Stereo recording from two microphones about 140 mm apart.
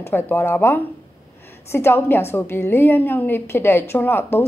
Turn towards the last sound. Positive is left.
turn(degrees=15)  # may be behind; listen again after turning